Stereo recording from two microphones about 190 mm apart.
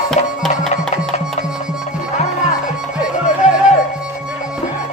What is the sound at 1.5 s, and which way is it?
Music, 5° right (ahead or behind).